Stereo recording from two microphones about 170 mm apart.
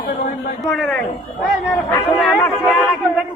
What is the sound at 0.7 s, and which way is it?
Speech, 5° left (ahead or behind).